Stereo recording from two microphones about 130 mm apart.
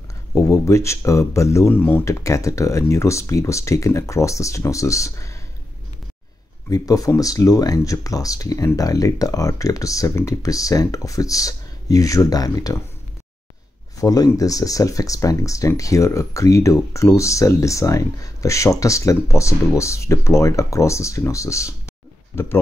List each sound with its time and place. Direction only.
0.3 s speech: 25° left (ahead or behind)
6.7 s speech: 25° left (ahead or behind)
14.0 s speech: 30° left (ahead or behind)